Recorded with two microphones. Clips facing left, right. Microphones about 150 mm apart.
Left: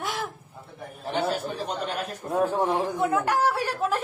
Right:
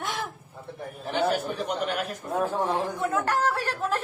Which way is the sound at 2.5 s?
15° left (ahead or behind).